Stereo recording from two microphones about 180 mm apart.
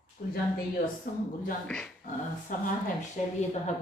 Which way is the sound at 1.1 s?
50° left (ahead or behind).